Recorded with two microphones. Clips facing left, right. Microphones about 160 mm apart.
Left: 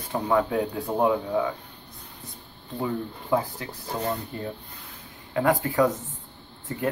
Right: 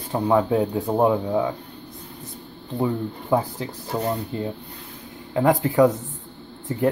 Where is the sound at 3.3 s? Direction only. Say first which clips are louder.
Right 3 dB; 25° right (ahead or behind).